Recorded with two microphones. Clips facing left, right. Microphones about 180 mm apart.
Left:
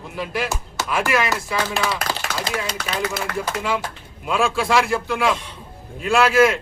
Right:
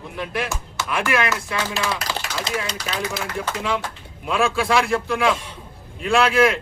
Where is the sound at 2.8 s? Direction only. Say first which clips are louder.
Left 1 dB; 55° left (ahead or behind).